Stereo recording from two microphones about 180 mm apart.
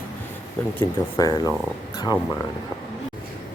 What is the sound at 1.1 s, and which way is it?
Speech, 20° left (ahead or behind).